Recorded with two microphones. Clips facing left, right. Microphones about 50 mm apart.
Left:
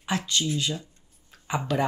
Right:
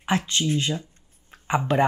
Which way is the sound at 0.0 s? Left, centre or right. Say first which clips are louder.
Right 3 dB; right.